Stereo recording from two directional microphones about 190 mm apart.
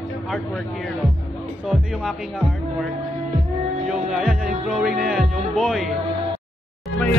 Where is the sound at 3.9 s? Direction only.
Centre (ahead or behind).